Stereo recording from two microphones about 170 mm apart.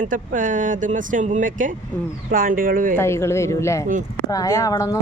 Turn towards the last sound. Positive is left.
turn(degrees=20)  # may be behind; listen again after turning